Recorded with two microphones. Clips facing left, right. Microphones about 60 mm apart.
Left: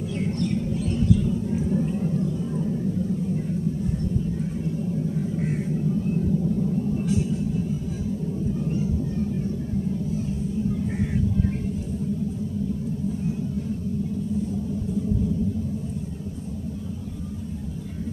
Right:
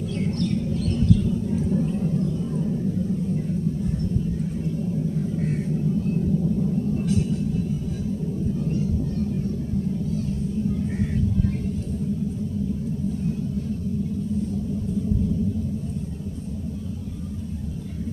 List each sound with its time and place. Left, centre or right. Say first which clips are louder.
0.2 s a sound: right 1 dB; centre
5.3 s vehicle: right 1 dB; centre
8.5 s vehicle: right 1 dB; centre